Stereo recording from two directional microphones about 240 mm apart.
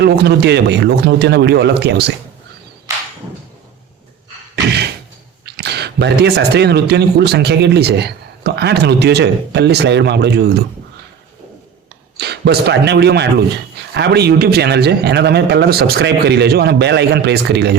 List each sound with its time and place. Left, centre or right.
0.0 s speech: right
5.5 s speech: right
12.1 s speech: right